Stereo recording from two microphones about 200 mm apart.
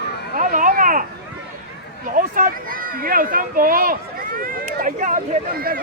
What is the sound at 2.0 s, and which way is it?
Speech, 45° right (ahead or behind).